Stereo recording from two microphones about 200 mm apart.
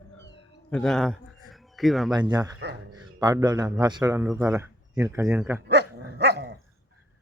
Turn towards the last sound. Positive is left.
turn(degrees=-55)  # may be behind; listen again after turning